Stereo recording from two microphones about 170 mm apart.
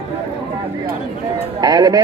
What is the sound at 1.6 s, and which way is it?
Speech, 25° right (ahead or behind).